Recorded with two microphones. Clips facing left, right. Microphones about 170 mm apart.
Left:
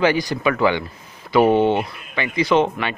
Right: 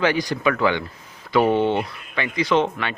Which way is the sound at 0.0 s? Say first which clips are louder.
Left 2 dB; 5° left (ahead or behind).